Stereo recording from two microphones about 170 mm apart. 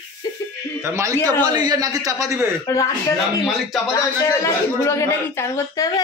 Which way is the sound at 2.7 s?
20° left (ahead or behind).